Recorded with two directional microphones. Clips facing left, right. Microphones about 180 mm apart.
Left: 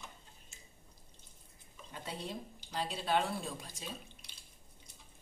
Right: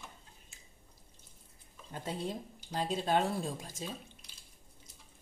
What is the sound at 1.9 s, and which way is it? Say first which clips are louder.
Speech: right 5 dB; 45° right (ahead or behind).